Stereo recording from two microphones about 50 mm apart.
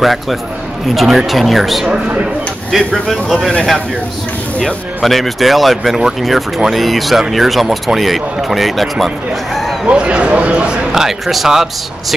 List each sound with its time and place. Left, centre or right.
0.0 s speech: centre
5.0 s speech: centre
9.8 s speech: right
10.9 s speech: centre